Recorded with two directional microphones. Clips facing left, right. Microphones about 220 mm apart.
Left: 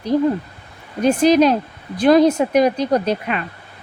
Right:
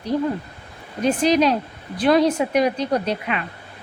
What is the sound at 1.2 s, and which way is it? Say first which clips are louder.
A woman's voice: left 5 dB; 45° left (ahead or behind).